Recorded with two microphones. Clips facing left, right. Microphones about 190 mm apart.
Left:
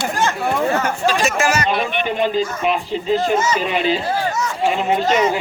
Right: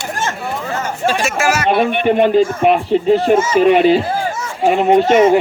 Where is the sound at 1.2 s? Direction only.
5° right (ahead or behind).